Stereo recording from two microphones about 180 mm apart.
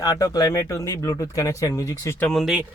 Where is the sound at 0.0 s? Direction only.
20° left (ahead or behind); by 2.6 s centre (ahead or behind).